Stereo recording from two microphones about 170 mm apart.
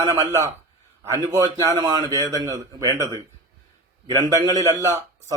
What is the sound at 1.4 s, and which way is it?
Speech, 25° right (ahead or behind).